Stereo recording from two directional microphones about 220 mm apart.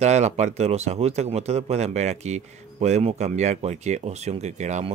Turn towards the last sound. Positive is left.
turn(degrees=-30)  # may be behind; listen again after turning